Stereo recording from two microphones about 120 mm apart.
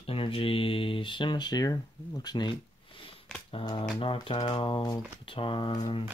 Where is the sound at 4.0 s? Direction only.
50° left (ahead or behind).